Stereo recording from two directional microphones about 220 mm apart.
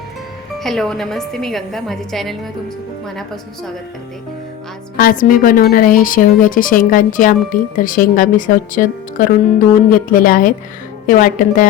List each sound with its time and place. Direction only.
0.6 s a woman's voice: centre (ahead or behind)
4.9 s speech: 40° left (ahead or behind)